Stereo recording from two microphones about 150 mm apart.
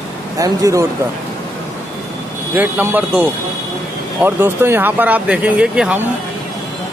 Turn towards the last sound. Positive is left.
turn(degrees=-10)  # may be behind; listen again after turning